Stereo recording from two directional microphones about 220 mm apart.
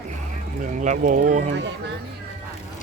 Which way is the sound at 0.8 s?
35° right (ahead or behind).